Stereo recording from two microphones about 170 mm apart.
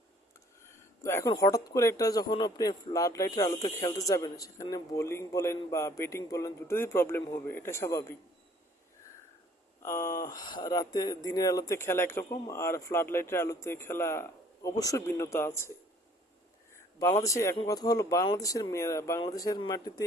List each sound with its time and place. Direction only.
0.6 s a sound: 15° left (ahead or behind)
1.3 s speech: 20° left (ahead or behind)
9.8 s speech: 15° left (ahead or behind)
17.0 s speech: 15° left (ahead or behind)